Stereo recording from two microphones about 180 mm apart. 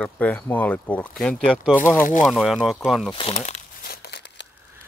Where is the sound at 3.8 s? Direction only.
65° left (ahead or behind).